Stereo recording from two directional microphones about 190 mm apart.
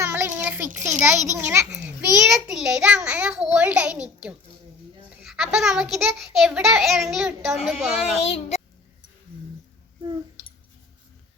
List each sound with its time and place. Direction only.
0.0 s a sound: 15° right (ahead or behind)
1.4 s a child's voice: 15° right (ahead or behind)
2.1 s a child's voice: centre (ahead or behind)
8.2 s a child's voice: 35° left (ahead or behind)